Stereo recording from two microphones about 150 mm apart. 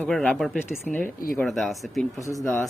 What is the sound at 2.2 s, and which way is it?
Speech, 20° left (ahead or behind).